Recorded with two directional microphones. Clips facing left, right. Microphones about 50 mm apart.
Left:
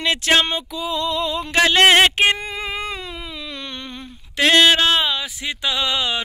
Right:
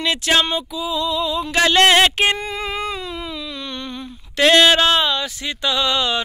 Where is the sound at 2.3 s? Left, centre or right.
Left.